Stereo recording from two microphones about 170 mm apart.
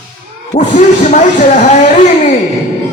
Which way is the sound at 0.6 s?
45° left (ahead or behind).